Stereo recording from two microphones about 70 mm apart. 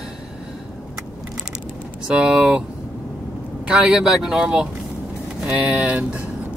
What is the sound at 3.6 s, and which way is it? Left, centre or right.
Speech, centre.